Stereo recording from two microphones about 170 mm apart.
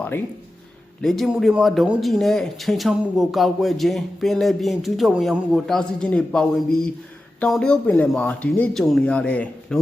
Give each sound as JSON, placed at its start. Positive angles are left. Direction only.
{"t": 1.0, "sound": "speech", "side_deg": 0}